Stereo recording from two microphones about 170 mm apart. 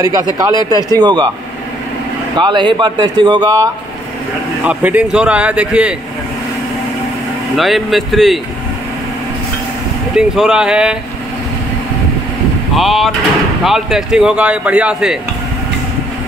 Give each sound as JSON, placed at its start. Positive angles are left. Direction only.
{"t": 0.0, "sound": "speech", "side_deg": -20}
{"t": 2.3, "sound": "speech", "side_deg": -25}
{"t": 4.6, "sound": "speech", "side_deg": -10}
{"t": 7.5, "sound": "speech", "side_deg": 0}
{"t": 10.1, "sound": "speech", "side_deg": -5}
{"t": 12.7, "sound": "speech", "side_deg": 0}